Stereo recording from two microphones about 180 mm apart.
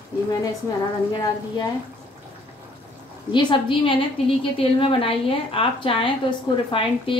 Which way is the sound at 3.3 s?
25° left (ahead or behind).